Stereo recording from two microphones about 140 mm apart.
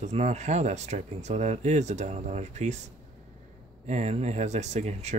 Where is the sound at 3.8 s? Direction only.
55° right (ahead or behind).